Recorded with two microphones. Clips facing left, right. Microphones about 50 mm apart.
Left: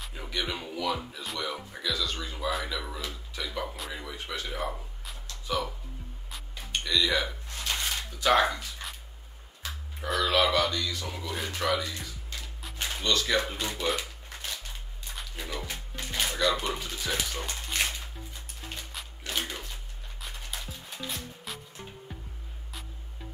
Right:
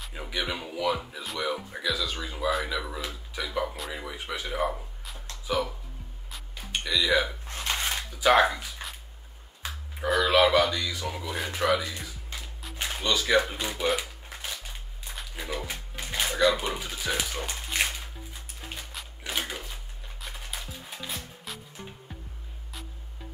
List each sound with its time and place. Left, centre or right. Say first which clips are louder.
0.1 s speech: right 2 dB; centre
7.4 s hiccup: right 2 dB; right
8.2 s speech: right 3 dB; centre
9.6 s music: right 2 dB; right
10.0 s speech: right 4 dB; centre
13.8 s shuffling cards: right 5 dB; centre
15.3 s music: right 3 dB; centre
19.2 s a sound: right 1 dB; centre
20.2 s music: right 1 dB; centre